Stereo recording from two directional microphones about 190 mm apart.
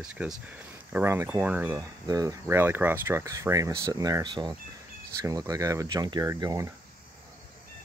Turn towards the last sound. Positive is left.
turn(degrees=-15)  # may be behind; listen again after turning